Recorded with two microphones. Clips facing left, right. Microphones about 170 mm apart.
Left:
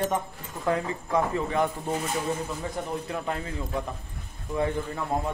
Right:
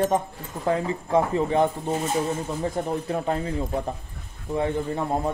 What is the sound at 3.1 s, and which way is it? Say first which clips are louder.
Speech: right 5 dB; 35° right (ahead or behind).